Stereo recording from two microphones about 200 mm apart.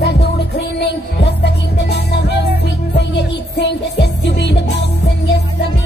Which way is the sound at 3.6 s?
60° left (ahead or behind).